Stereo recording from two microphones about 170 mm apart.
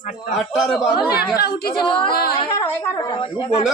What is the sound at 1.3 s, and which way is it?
Speech, 70° left (ahead or behind).